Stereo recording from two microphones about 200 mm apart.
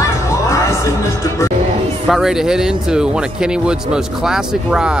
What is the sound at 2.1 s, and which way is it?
Speech, centre (ahead or behind).